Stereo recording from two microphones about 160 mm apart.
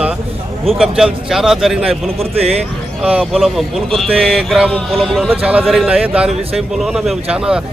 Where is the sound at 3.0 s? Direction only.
5° right (ahead or behind).